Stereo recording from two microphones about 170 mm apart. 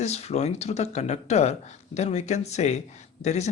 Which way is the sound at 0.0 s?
40° left (ahead or behind).